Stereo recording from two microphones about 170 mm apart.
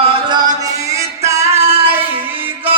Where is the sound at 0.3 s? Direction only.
25° right (ahead or behind).